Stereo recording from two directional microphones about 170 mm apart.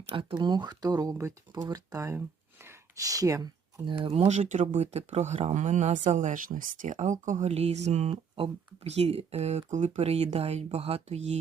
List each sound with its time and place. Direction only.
0.1 s speech: 25° right (ahead or behind)
2.6 s a sound: 20° right (ahead or behind)
4.0 s speech: 35° right (ahead or behind)